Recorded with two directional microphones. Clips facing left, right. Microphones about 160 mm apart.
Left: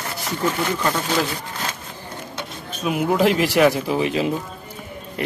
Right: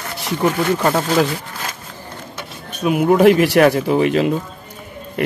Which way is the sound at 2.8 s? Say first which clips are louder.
Right 7 dB; 60° right (ahead or behind).